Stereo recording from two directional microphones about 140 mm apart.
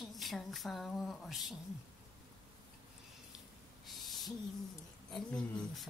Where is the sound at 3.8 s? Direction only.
Centre (ahead or behind).